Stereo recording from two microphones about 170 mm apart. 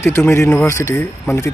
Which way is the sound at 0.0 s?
15° left (ahead or behind).